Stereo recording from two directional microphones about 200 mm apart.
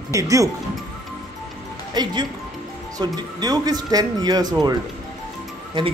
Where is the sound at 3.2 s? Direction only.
20° right (ahead or behind).